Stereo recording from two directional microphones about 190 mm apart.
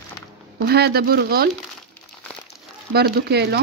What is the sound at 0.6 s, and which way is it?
Speech, 55° right (ahead or behind).